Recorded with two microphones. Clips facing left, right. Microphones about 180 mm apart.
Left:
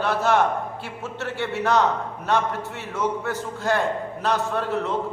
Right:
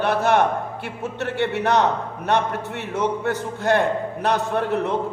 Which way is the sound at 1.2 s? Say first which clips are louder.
Right 4 dB; 60° right (ahead or behind).